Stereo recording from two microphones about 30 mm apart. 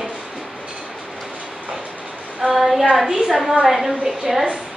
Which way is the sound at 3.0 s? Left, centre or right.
Centre.